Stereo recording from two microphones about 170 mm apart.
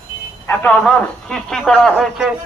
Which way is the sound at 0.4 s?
10° left (ahead or behind).